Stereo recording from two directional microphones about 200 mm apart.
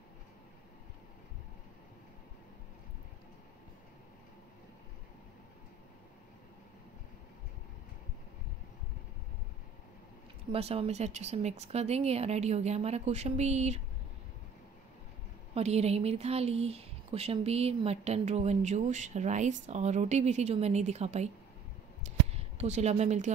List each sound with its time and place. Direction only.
10.5 s a woman's voice: 30° right (ahead or behind)
15.5 s a woman's voice: 30° right (ahead or behind)
22.0 s a sound: 30° right (ahead or behind)